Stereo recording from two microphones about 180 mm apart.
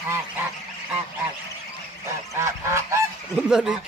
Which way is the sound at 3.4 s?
5° right (ahead or behind).